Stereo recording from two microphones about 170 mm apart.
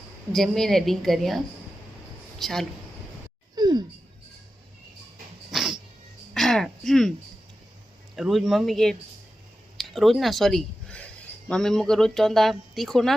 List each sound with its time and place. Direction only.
0.3 s a woman's voice: centre (ahead or behind)
2.4 s speech: centre (ahead or behind)
3.5 s a sound: 25° right (ahead or behind)
5.5 s cat: centre (ahead or behind)
6.3 s speech: centre (ahead or behind)
8.1 s a woman's voice: centre (ahead or behind)